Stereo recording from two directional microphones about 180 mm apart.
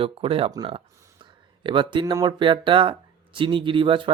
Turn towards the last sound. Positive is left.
turn(degrees=-30)  # may be behind; listen again after turning